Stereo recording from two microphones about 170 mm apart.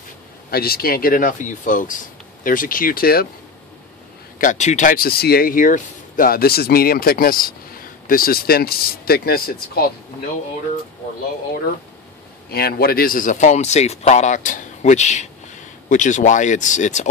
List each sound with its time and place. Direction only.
0.5 s speech: 65° left (ahead or behind)
4.4 s speech: 45° left (ahead or behind); by 9.8 s 65° left (ahead or behind)
12.4 s a man's voice: 65° left (ahead or behind); by 17.1 s 45° left (ahead or behind)